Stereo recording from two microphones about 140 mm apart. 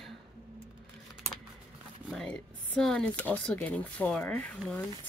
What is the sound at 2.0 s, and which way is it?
Speech, 5° left (ahead or behind).